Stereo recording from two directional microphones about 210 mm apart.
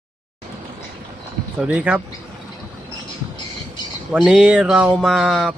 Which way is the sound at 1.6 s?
5° right (ahead or behind).